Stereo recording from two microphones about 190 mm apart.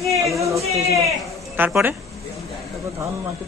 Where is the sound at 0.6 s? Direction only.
35° right (ahead or behind).